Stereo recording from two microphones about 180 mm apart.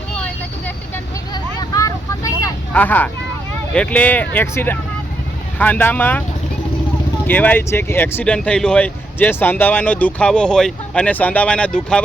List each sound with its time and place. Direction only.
1.3 s vehicle: 20° left (ahead or behind)
3.8 s speech: 5° left (ahead or behind)
7.3 s speech: 10° left (ahead or behind)